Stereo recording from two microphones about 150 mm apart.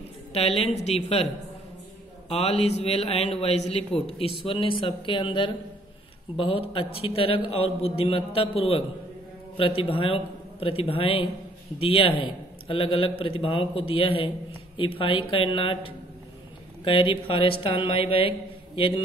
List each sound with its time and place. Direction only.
0.6 s a man's voice: 45° left (ahead or behind)